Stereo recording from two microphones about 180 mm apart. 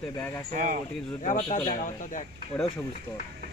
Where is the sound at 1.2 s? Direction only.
45° left (ahead or behind).